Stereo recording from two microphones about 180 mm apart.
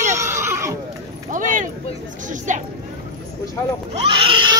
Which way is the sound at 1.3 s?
45° right (ahead or behind).